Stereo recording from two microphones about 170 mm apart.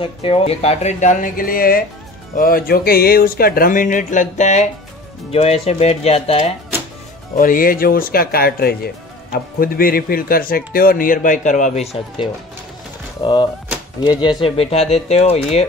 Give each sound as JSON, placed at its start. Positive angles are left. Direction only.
{"t": 0.0, "sound": "speech", "side_deg": 35}
{"t": 7.3, "sound": "speech", "side_deg": 55}
{"t": 13.2, "sound": "speech", "side_deg": 25}